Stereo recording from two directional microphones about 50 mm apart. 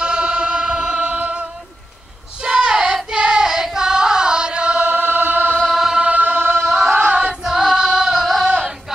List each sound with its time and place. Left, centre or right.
0.0 s music: centre
2.4 s child singing: centre
3.1 s music: centre
4.9 s choir: right
5.7 s choir: centre
5.9 s choir: right
6.6 s singing: centre
7.4 s music: centre